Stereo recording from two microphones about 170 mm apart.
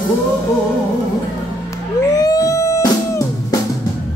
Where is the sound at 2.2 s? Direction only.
20° left (ahead or behind).